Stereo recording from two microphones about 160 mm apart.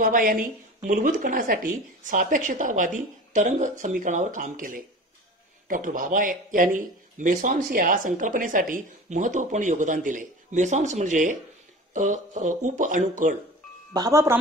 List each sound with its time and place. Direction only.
0.0 s speech: 60° right (ahead or behind)
13.9 s speech: 20° right (ahead or behind)